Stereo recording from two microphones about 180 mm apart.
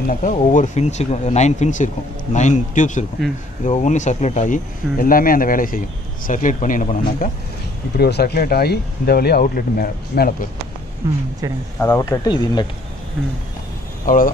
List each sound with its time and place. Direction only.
0.1 s speech: 45° left (ahead or behind)
8.0 s speech: 60° left (ahead or behind)
11.0 s speech: 15° right (ahead or behind)
11.8 s speech: 15° left (ahead or behind)
14.0 s speech: 50° left (ahead or behind)